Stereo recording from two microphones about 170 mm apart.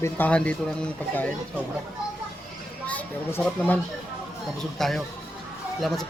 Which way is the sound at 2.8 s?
10° left (ahead or behind).